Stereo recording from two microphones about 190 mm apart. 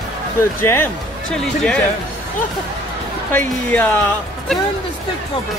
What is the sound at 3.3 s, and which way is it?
Speech, 10° left (ahead or behind).